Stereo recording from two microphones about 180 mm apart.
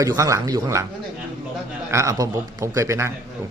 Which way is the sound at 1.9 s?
15° right (ahead or behind).